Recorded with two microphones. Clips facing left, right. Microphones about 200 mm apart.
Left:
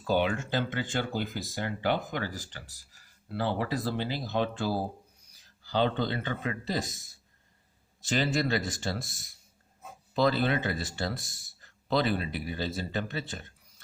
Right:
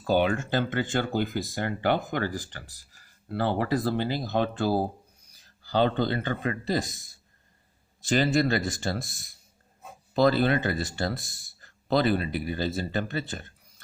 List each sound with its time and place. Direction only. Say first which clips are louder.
0.0 s speech: right 3 dB; 45° right (ahead or behind)
8.1 s speech: right 4 dB; 45° right (ahead or behind)